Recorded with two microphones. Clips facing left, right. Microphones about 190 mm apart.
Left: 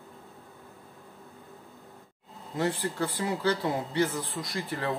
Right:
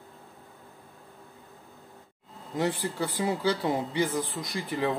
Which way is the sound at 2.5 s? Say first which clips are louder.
Even; 15° right (ahead or behind).